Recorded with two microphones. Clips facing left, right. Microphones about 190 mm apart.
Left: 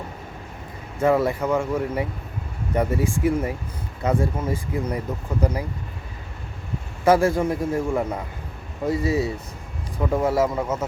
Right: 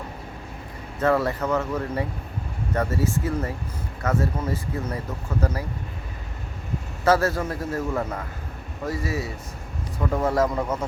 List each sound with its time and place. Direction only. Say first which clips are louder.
0.9 s a man's voice: left 2 dB; 10° left (ahead or behind)
7.0 s a man's voice: left 3 dB; 15° left (ahead or behind)
10.0 s a man's voice: left 2 dB; 10° left (ahead or behind)